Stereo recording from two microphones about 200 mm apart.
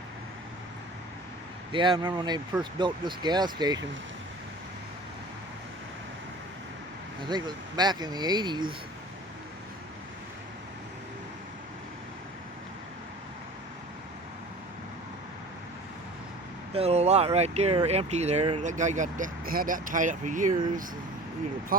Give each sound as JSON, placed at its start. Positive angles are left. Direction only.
{"t": 1.7, "sound": "speech", "side_deg": -25}
{"t": 7.3, "sound": "speech", "side_deg": -20}
{"t": 16.7, "sound": "speech", "side_deg": -30}
{"t": 21.7, "sound": "speech", "side_deg": -45}